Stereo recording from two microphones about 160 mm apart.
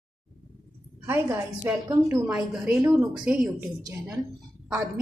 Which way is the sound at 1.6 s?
15° right (ahead or behind).